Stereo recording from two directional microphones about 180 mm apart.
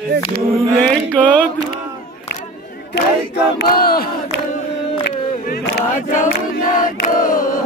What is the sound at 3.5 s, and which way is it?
Battle cry, 60° left (ahead or behind).